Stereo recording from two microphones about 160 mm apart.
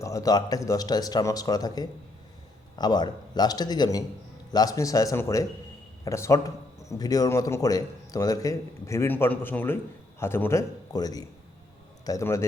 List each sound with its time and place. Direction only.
0.0 s a man's voice: 20° left (ahead or behind)